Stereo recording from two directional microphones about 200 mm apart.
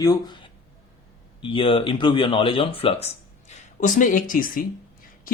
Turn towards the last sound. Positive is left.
turn(degrees=45)  # may be behind; listen again after turning